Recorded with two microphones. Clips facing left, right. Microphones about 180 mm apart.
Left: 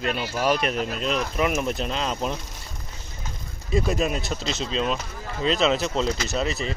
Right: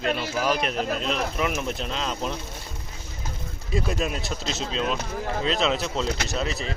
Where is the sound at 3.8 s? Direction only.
Centre (ahead or behind).